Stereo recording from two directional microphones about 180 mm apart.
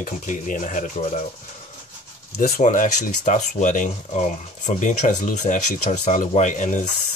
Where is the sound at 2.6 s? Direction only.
40° left (ahead or behind).